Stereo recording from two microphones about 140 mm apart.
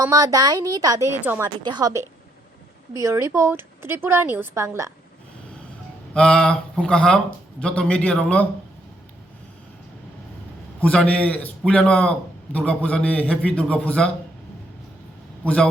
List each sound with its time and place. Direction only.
0.0 s a woman's voice: 25° right (ahead or behind)
1.1 s a woman's voice: 15° right (ahead or behind)
1.6 s a woman's voice: 30° right (ahead or behind)
2.9 s a woman's voice: 20° right (ahead or behind)
6.1 s a man's voice: 5° left (ahead or behind)
10.8 s a man's voice: 10° left (ahead or behind)